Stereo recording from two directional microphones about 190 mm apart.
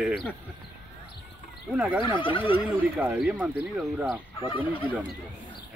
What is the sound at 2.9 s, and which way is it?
Speech, 5° right (ahead or behind).